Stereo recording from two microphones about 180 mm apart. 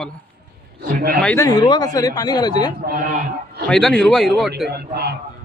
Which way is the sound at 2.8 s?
50° right (ahead or behind).